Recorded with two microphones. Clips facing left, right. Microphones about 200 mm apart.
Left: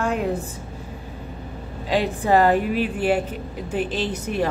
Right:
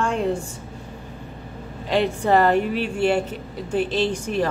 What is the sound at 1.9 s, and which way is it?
Speech, 10° left (ahead or behind).